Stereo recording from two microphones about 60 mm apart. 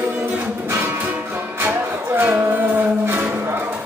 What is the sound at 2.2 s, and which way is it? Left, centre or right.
Music, right.